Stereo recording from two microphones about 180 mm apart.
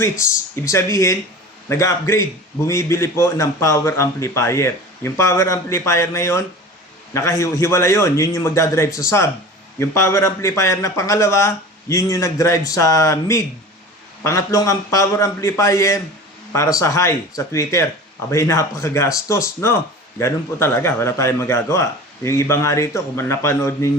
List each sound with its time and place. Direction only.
0.0 s speech: 15° left (ahead or behind)